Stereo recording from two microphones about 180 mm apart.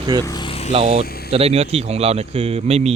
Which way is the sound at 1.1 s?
60° left (ahead or behind).